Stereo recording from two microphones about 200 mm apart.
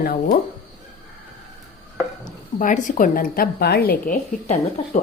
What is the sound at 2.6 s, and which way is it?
Speech, 40° left (ahead or behind).